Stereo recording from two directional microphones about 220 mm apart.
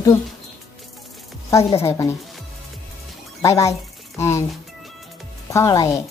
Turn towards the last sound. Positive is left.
turn(degrees=15)  # may be behind; listen again after turning